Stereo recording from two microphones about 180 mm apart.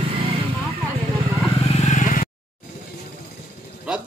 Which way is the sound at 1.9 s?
45° left (ahead or behind).